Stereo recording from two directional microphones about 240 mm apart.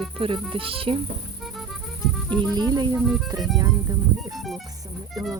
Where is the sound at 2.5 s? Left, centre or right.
Centre.